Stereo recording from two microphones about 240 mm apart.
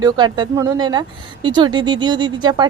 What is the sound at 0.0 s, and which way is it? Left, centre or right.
Speech, centre.